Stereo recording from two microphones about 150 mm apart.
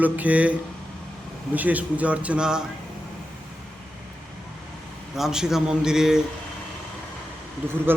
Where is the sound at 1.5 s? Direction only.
10° right (ahead or behind).